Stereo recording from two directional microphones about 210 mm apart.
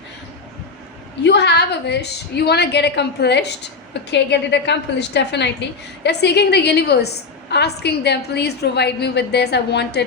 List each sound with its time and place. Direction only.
1.2 s a woman's voice: 55° left (ahead or behind)